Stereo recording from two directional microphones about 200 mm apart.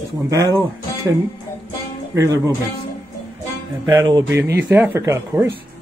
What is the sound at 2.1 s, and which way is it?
Speech, 15° right (ahead or behind).